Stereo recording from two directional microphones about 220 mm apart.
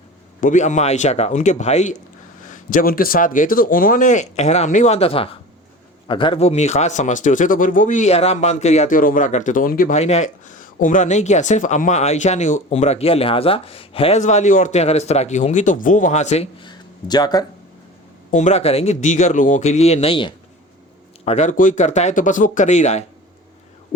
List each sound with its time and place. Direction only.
0.4 s speech: 35° left (ahead or behind); by 17.4 s 20° left (ahead or behind)
18.3 s speech: 35° left (ahead or behind)